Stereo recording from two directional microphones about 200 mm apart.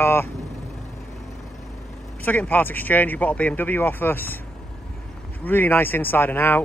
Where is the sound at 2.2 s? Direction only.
10° left (ahead or behind).